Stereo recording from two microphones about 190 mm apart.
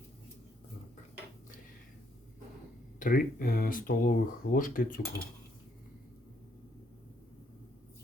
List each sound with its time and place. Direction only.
3.0 s speech: 45° left (ahead or behind)